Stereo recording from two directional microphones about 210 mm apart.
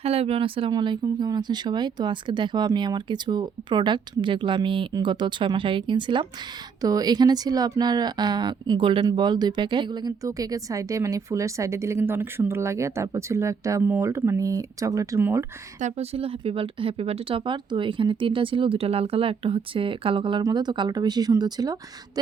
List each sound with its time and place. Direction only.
0.0 s speech: 30° right (ahead or behind); by 15.4 s 10° right (ahead or behind)
15.8 s speech: 30° right (ahead or behind)